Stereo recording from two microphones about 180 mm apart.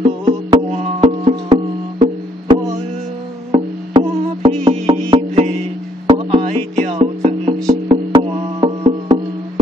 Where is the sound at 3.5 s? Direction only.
30° right (ahead or behind).